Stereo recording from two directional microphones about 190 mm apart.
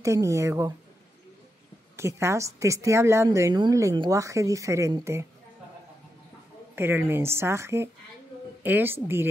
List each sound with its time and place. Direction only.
0.0 s a woman's voice: 15° right (ahead or behind)
2.0 s a woman's voice: 15° right (ahead or behind)
6.7 s a woman's voice: 10° right (ahead or behind)